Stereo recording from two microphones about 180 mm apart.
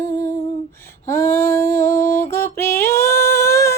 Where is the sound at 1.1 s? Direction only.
15° left (ahead or behind).